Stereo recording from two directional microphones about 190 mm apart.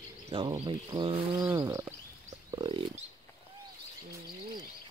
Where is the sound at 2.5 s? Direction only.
25° right (ahead or behind).